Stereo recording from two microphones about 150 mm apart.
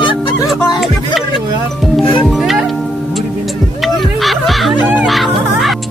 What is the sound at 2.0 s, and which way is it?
Music, 35° left (ahead or behind).